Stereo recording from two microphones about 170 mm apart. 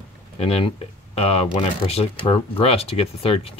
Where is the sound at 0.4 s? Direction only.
35° left (ahead or behind).